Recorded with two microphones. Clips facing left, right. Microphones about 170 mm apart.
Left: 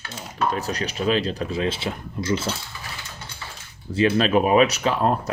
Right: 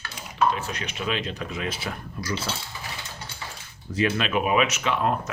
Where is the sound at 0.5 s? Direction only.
35° left (ahead or behind).